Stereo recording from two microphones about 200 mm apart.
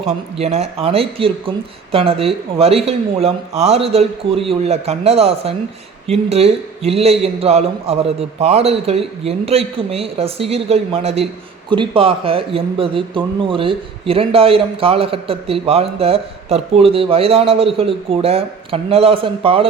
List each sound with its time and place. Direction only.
0.3 s speech: 30° right (ahead or behind)